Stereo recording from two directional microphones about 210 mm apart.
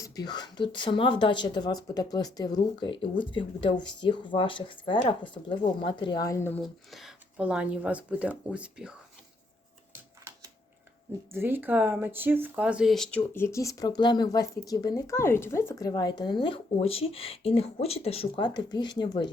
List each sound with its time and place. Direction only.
0.0 s speech: 20° left (ahead or behind)
6.6 s speech: centre (ahead or behind)
11.3 s speech: 10° right (ahead or behind); by 19.3 s 20° left (ahead or behind)